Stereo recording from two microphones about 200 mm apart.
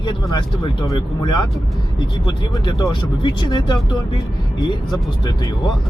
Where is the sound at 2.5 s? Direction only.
20° left (ahead or behind).